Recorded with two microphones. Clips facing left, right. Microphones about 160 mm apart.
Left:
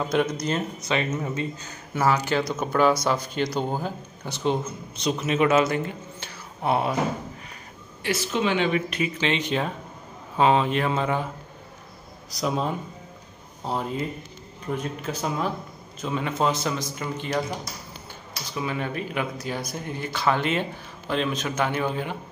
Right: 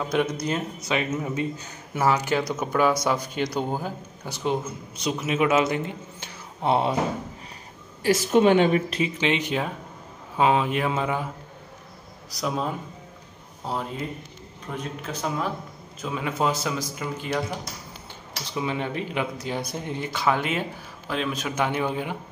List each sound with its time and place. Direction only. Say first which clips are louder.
0.0 s a man's voice: left 1 dB; centre (ahead or behind); by 7.0 s 25° right (ahead or behind)
8.0 s a woman's voice: right 7 dB; 45° right (ahead or behind)
9.2 s a man's voice: even; 10° right (ahead or behind)
12.4 s a man's voice: left 2 dB; centre (ahead or behind)
18.5 s a man's voice: right 1 dB; 20° right (ahead or behind)